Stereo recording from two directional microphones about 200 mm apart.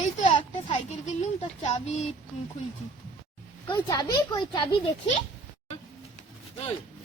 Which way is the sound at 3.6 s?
20° left (ahead or behind).